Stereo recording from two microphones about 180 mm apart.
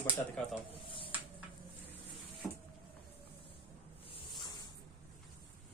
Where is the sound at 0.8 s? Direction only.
30° left (ahead or behind).